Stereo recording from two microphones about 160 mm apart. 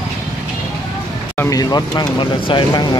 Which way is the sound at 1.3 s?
20° left (ahead or behind).